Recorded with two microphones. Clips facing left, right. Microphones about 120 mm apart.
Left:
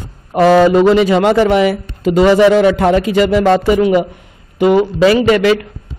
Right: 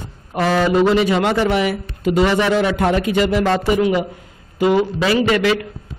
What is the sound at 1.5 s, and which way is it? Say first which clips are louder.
Speech: left 6 dB; 90° left.